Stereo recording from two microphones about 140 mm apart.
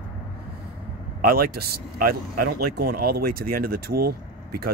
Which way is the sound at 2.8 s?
90° right.